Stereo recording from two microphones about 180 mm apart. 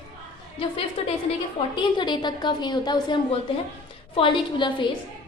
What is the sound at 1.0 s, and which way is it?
A woman's voice, 30° left (ahead or behind).